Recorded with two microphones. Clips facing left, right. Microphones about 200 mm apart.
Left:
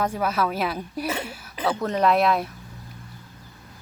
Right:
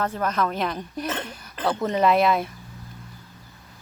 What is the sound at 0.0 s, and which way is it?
A woman's voice, 10° left (ahead or behind).